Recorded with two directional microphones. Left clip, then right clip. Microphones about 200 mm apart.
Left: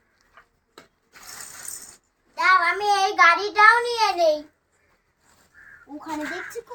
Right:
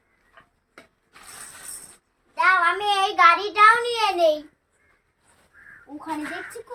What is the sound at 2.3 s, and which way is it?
Child singing, 5° left (ahead or behind).